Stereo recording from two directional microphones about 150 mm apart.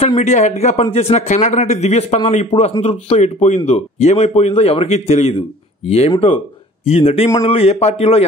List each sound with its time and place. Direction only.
0.0 s a man's voice: 50° left (ahead or behind)